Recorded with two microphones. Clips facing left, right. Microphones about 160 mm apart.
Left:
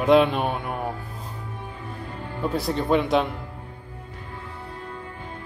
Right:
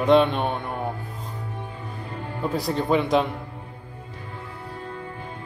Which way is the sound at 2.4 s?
Centre (ahead or behind).